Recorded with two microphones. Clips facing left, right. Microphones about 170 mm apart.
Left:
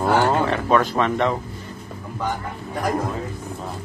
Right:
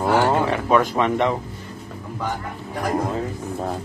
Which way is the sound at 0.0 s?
10° right (ahead or behind).